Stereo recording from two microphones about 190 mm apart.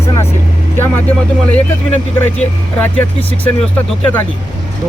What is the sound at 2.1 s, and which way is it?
Speech, 10° left (ahead or behind).